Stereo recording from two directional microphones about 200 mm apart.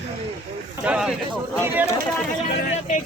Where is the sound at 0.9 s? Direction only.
5° right (ahead or behind).